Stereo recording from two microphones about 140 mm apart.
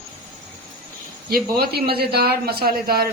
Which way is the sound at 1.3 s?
90° right.